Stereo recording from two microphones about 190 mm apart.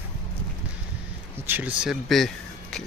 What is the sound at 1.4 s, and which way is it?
Speech, 10° right (ahead or behind).